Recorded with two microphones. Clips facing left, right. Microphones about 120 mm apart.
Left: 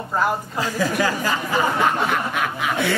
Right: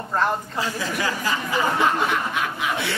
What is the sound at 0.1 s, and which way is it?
Speech, 10° left (ahead or behind).